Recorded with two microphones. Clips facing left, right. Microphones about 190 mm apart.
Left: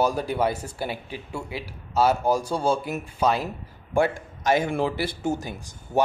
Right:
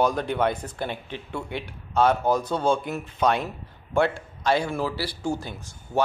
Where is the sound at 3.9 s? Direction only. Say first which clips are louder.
Even; 15° left (ahead or behind).